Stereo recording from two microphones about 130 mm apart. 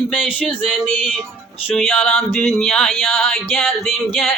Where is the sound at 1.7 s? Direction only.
Centre (ahead or behind).